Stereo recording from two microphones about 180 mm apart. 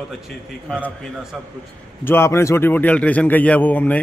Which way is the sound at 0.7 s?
5° left (ahead or behind).